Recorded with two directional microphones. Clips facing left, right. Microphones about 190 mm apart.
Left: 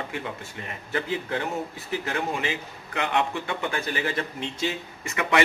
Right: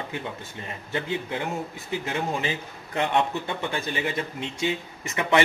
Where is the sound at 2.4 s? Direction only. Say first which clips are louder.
Even; 30° right (ahead or behind).